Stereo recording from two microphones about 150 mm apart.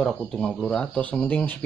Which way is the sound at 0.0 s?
Centre (ahead or behind).